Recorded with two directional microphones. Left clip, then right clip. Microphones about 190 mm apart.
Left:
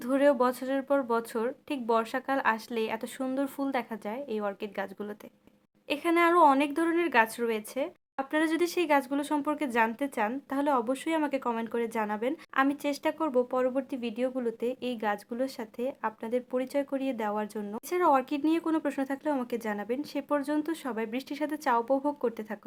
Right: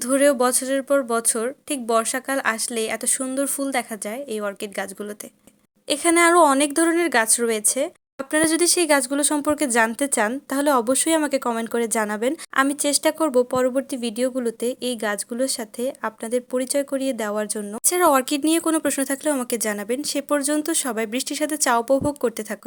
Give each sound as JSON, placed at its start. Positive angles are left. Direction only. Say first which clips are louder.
{"t": 0.0, "sound": "a woman's voice", "louder": "right 6 dB", "side_deg": -20}
{"t": 5.9, "sound": "speech", "louder": "right 8 dB", "side_deg": -30}